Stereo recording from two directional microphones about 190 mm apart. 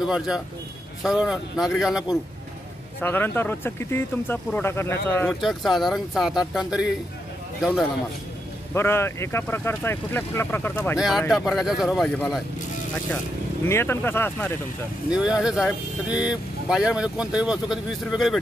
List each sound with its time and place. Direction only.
0.0 s speech: 5° right (ahead or behind)
3.0 s speech: 10° left (ahead or behind)
5.4 s speech: centre (ahead or behind)
8.7 s speech: 10° left (ahead or behind)
11.0 s speech: centre (ahead or behind)
13.7 s speech: 10° left (ahead or behind)
15.0 s speech: 5° right (ahead or behind)